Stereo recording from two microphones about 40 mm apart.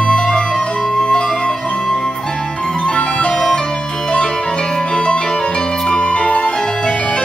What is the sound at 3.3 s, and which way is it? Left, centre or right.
Music, centre.